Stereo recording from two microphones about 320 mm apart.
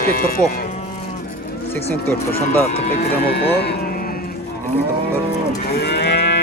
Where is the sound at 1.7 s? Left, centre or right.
Centre.